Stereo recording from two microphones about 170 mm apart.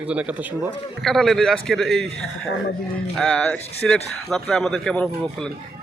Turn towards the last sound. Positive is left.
turn(degrees=5)  # may be behind; listen again after turning